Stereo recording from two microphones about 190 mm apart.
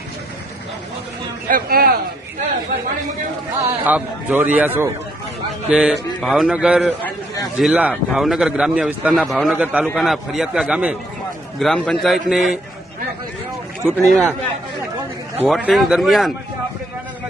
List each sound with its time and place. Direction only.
1.5 s speech: 50° right (ahead or behind)
3.6 s a man's voice: 10° right (ahead or behind)
14.0 s a man's voice: centre (ahead or behind)
15.4 s a man's voice: centre (ahead or behind)